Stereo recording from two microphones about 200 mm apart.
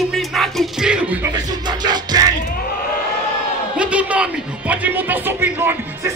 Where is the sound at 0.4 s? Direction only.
Centre (ahead or behind).